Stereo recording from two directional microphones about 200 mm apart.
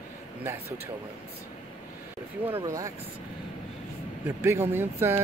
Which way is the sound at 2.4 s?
15° right (ahead or behind).